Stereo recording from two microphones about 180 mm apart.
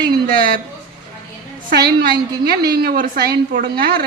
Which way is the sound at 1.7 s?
60° right (ahead or behind).